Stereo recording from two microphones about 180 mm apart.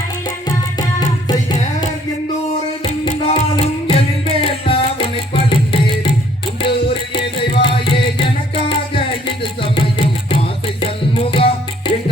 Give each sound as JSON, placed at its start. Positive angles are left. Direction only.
{"t": 0.4, "sound": "music", "side_deg": 20}
{"t": 3.1, "sound": "music", "side_deg": 35}